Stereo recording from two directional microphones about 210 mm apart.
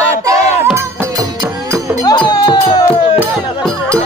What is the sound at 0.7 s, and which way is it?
Music, 15° right (ahead or behind).